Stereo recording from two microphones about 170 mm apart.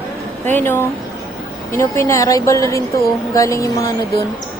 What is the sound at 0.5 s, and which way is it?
A woman's voice, 10° left (ahead or behind).